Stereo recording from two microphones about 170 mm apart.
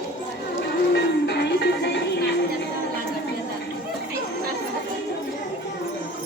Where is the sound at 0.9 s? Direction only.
90° left.